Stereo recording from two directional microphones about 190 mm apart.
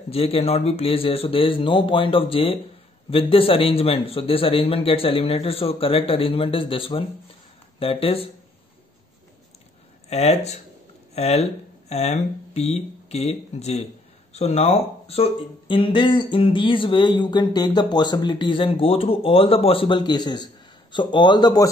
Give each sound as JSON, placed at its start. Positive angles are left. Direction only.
{"t": 0.1, "sound": "speech", "side_deg": 30}
{"t": 10.0, "sound": "speech", "side_deg": 35}